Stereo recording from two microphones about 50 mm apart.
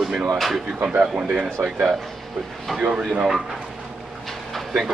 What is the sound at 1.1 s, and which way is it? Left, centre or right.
Speech, right.